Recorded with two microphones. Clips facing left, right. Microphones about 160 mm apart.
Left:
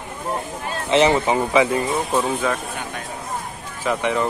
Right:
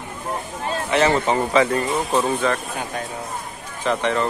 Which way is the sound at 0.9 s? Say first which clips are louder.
Left 2 dB; 15° left (ahead or behind).